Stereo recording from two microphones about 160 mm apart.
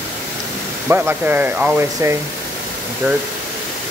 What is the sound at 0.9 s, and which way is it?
Speech, 10° right (ahead or behind).